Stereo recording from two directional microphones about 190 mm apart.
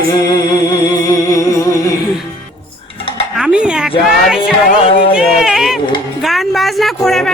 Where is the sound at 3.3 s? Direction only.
5° right (ahead or behind).